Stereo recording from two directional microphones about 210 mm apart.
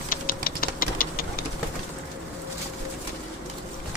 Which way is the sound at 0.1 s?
45° left (ahead or behind).